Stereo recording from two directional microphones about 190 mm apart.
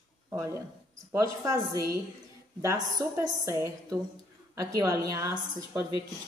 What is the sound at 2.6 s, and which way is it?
Speech, 15° right (ahead or behind).